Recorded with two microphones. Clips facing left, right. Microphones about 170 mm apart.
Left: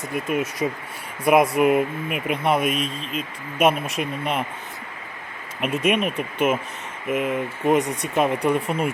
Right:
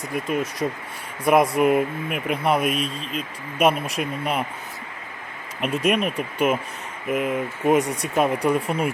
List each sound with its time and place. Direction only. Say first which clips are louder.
0.1 s speech: even; 5° left (ahead or behind)
5.5 s speech: even; 5° left (ahead or behind)